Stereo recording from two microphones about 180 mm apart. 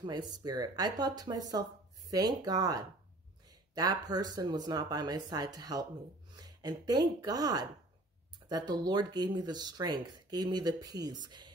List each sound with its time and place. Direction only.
0.0 s speech: 25° right (ahead or behind)